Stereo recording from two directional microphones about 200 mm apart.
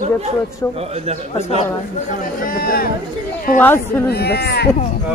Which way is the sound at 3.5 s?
10° left (ahead or behind).